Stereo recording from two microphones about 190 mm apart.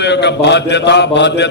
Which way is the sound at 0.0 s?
65° left (ahead or behind).